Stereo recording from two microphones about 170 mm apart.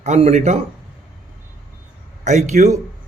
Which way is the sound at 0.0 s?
40° right (ahead or behind).